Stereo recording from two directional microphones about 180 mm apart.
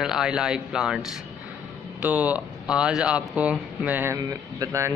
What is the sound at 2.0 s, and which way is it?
Speech, 10° right (ahead or behind).